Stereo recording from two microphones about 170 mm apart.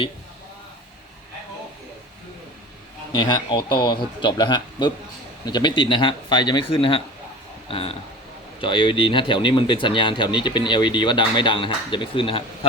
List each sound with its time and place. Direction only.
3.1 s speech: 25° left (ahead or behind)